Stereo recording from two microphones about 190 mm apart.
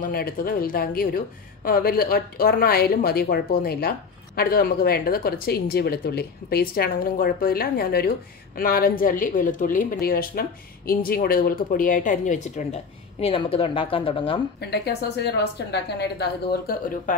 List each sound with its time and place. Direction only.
0.0 s speech: 50° left (ahead or behind); by 14.4 s 25° left (ahead or behind)
14.7 s speech: 60° left (ahead or behind)